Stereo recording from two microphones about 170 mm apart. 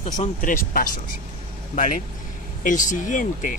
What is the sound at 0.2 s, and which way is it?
Speech, 50° left (ahead or behind).